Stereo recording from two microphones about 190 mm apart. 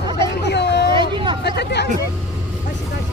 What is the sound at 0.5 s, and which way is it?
Hubbub, 65° left (ahead or behind).